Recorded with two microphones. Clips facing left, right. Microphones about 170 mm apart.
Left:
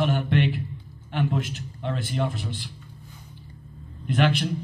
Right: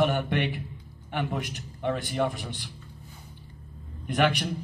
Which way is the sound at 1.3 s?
15° right (ahead or behind).